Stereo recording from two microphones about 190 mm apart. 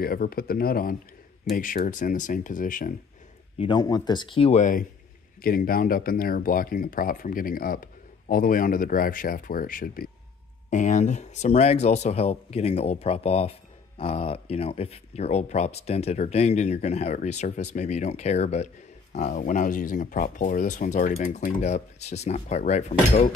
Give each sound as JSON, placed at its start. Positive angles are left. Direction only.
{"t": 0.0, "sound": "speech", "side_deg": 50}
{"t": 3.5, "sound": "speech", "side_deg": 25}